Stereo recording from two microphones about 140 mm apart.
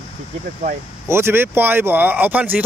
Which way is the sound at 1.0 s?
15° right (ahead or behind).